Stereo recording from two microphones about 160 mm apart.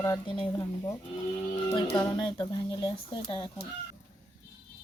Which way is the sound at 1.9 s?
25° left (ahead or behind).